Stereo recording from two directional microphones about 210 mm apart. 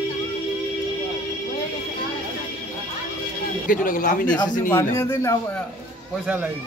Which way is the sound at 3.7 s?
40° left (ahead or behind).